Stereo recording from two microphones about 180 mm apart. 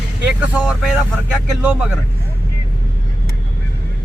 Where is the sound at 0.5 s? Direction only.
5° right (ahead or behind).